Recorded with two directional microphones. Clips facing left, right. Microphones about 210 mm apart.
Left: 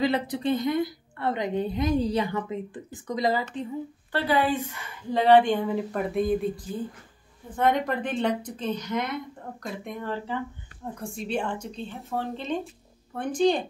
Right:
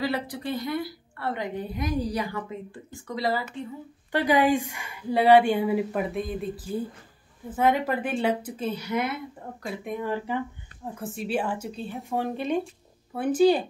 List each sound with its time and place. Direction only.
0.0 s a woman's voice: 20° left (ahead or behind)
4.1 s a woman's voice: 15° right (ahead or behind)